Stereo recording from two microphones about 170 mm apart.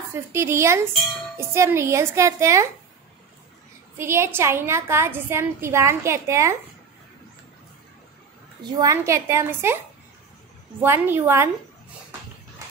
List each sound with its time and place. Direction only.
0.1 s a woman's voice: 15° right (ahead or behind)
4.0 s a woman's voice: 15° right (ahead or behind)
8.6 s a woman's voice: 25° right (ahead or behind)
10.8 s a woman's voice: 15° right (ahead or behind)